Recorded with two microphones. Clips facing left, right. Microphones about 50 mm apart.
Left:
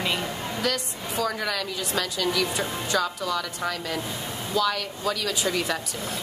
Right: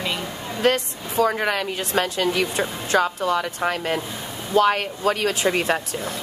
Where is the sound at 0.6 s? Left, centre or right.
Right.